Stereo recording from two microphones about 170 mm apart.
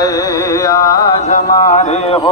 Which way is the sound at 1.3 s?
45° left (ahead or behind).